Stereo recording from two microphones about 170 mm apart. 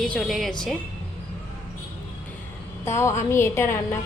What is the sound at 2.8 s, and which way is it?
Speech, 15° left (ahead or behind).